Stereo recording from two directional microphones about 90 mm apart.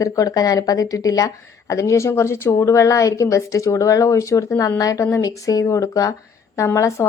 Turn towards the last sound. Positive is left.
turn(degrees=35)  # may be behind; listen again after turning